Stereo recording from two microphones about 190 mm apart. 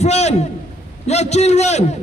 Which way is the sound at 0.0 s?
35° left (ahead or behind).